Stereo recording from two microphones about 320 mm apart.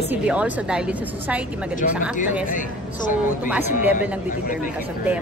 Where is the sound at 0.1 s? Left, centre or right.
Centre.